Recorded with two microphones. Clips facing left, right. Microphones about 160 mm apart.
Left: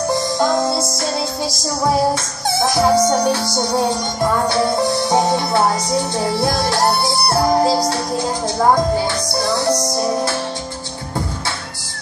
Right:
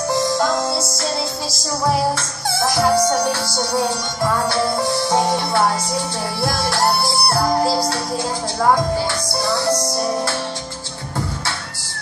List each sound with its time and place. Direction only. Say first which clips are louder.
2.8 s music: left 2 dB; 20° left (ahead or behind)
6.1 s music: left 4 dB; 20° left (ahead or behind)